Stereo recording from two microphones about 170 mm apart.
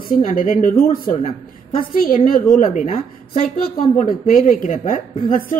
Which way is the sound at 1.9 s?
55° left (ahead or behind).